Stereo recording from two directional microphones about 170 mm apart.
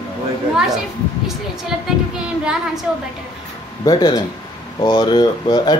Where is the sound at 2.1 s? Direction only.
5° right (ahead or behind).